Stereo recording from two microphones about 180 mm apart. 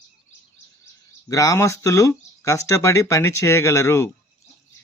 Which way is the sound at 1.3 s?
20° left (ahead or behind).